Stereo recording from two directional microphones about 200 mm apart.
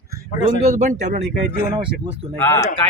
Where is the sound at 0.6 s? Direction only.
35° right (ahead or behind).